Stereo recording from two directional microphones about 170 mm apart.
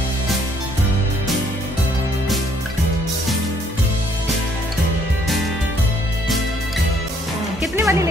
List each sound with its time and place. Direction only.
7.7 s music: 15° right (ahead or behind)